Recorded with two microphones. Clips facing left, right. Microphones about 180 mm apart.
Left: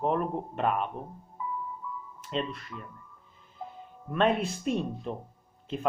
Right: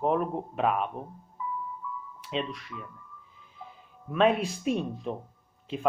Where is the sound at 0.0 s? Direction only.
Centre (ahead or behind).